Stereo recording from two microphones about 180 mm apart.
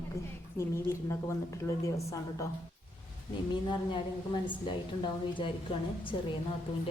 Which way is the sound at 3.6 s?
25° left (ahead or behind).